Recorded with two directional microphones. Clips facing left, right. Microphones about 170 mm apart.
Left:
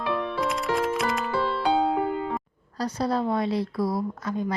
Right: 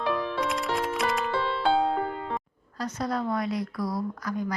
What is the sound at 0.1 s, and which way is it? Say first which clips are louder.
Music: left 2 dB; centre (ahead or behind).